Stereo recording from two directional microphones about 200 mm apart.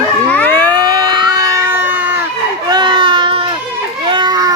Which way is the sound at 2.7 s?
25° right (ahead or behind).